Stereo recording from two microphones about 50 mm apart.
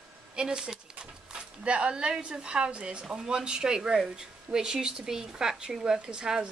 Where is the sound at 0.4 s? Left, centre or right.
Centre.